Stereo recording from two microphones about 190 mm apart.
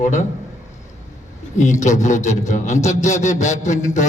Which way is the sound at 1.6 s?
40° left (ahead or behind).